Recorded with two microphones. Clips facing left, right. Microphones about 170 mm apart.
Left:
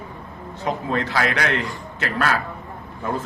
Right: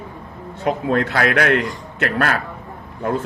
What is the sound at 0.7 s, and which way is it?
A man's voice, 60° right (ahead or behind).